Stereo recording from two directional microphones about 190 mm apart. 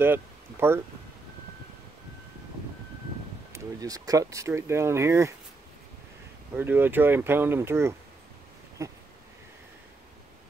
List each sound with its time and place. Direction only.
0.0 s a sound: 10° right (ahead or behind)
3.5 s speech: 20° right (ahead or behind)
6.5 s speech: 10° right (ahead or behind)